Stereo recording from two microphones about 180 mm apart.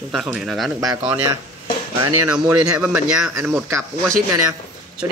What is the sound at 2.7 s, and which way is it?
Speech, 5° right (ahead or behind).